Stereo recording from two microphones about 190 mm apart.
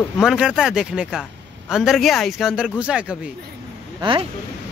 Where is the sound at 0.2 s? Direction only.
Centre (ahead or behind).